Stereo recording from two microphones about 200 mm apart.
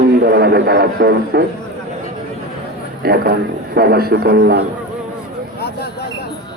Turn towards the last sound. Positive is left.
turn(degrees=55)  # may be behind; listen again after turning